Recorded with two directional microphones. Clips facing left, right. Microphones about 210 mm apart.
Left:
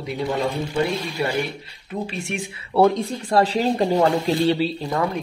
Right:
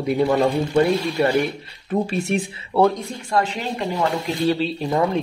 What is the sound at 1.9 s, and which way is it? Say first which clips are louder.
Speech: right 7 dB; 40° right (ahead or behind).